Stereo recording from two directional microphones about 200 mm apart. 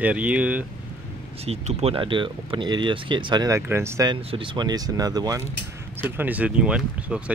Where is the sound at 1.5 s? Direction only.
30° right (ahead or behind).